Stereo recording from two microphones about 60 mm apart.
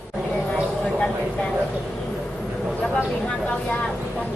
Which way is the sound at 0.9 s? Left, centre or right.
Centre.